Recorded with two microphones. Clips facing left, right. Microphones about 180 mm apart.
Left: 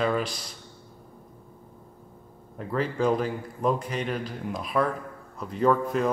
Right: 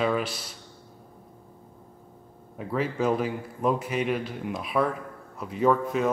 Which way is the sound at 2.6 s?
5° right (ahead or behind).